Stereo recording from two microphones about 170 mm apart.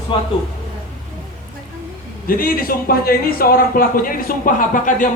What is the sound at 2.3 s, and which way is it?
Speech, 60° left (ahead or behind).